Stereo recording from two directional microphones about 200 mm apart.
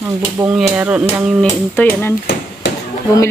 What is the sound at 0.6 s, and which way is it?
Speech, 5° right (ahead or behind).